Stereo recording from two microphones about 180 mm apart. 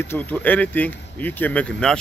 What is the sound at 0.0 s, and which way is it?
Speech, 10° left (ahead or behind).